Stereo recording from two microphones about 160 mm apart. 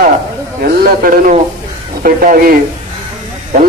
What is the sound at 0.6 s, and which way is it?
A man's voice, 65° right (ahead or behind).